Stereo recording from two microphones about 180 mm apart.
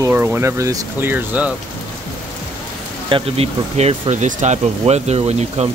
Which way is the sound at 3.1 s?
35° right (ahead or behind).